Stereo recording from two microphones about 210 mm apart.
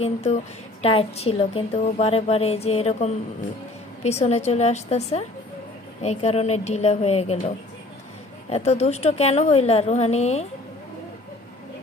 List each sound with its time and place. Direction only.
0.0 s a woman's voice: 30° left (ahead or behind)